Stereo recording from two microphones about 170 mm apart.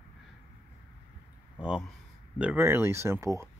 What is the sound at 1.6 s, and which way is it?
Speech, 5° right (ahead or behind).